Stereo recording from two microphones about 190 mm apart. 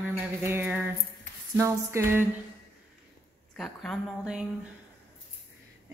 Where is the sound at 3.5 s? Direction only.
Centre (ahead or behind).